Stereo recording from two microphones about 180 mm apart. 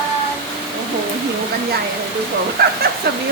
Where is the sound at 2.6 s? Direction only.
60° right (ahead or behind).